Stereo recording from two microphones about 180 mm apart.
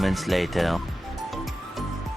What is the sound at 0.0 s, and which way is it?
Speech, centre (ahead or behind).